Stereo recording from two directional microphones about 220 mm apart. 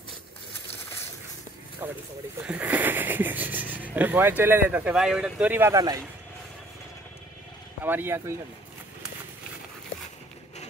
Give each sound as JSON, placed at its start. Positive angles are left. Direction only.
{"t": 1.8, "sound": "speech", "side_deg": -10}
{"t": 7.8, "sound": "speech", "side_deg": -10}